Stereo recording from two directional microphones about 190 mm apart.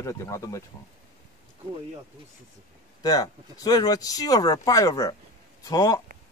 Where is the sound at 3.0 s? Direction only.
20° left (ahead or behind).